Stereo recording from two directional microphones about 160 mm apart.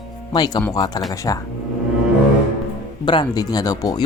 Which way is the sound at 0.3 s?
25° left (ahead or behind).